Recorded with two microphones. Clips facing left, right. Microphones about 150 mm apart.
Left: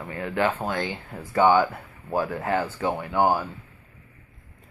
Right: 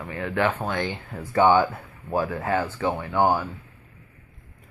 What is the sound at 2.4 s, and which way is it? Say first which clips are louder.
Speech: even; 20° left (ahead or behind).